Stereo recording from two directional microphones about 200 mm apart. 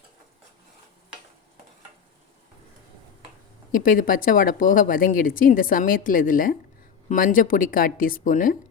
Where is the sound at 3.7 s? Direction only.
45° left (ahead or behind).